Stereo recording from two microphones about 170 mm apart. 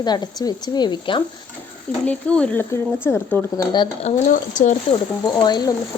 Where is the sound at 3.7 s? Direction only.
25° left (ahead or behind).